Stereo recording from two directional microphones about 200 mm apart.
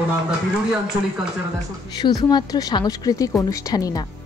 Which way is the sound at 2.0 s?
20° left (ahead or behind).